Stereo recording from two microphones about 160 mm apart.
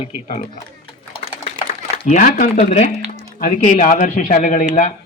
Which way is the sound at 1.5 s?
40° left (ahead or behind).